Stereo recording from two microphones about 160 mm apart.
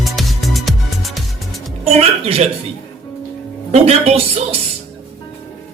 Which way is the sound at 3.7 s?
40° right (ahead or behind).